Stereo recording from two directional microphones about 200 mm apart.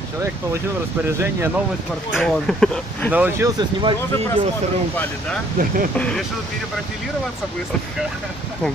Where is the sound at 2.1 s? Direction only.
Centre (ahead or behind).